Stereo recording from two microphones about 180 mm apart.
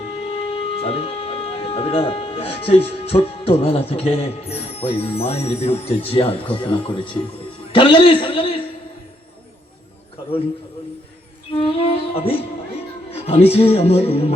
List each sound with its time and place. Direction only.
0.8 s a man's voice: 35° left (ahead or behind)
11.5 s music: 30° left (ahead or behind)
13.1 s speech: 35° left (ahead or behind)